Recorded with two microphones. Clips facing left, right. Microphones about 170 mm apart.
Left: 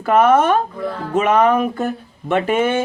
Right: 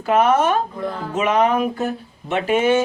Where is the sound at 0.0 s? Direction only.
55° left (ahead or behind).